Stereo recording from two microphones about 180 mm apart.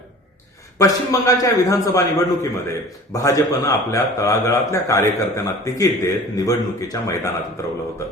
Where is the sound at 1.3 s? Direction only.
20° left (ahead or behind).